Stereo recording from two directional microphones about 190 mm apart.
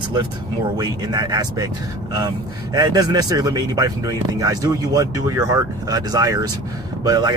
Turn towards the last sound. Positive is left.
turn(degrees=-20)  # may be behind; listen again after turning